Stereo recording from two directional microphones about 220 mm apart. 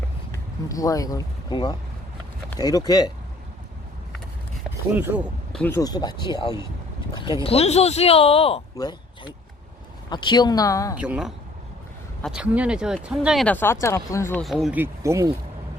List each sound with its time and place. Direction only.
0.7 s speech: 15° left (ahead or behind)
4.9 s speech: 5° right (ahead or behind)
5.5 s speech: 10° left (ahead or behind)
10.9 s speech: 5° right (ahead or behind); by 14.4 s 10° left (ahead or behind)
14.4 s speech: centre (ahead or behind)